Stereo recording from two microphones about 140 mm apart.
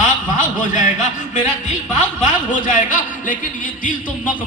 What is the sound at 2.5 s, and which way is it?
Speech, 70° left (ahead or behind).